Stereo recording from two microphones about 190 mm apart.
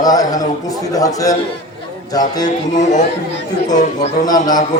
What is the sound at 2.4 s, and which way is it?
Speech, 40° left (ahead or behind).